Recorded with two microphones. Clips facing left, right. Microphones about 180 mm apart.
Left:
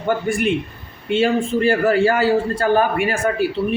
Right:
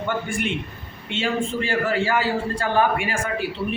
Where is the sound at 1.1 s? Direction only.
40° left (ahead or behind).